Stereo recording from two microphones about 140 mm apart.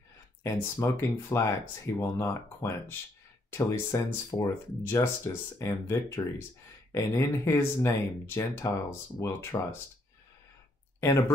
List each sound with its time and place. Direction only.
0.4 s speech: 20° left (ahead or behind)
11.0 s speech: 20° left (ahead or behind)